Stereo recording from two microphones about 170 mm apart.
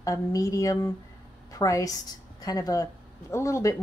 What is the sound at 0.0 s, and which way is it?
A woman's voice, 20° left (ahead or behind).